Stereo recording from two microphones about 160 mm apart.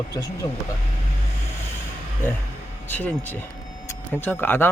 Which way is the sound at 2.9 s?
10° left (ahead or behind).